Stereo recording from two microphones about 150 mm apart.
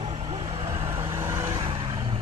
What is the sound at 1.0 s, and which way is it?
Vehicle, 20° right (ahead or behind).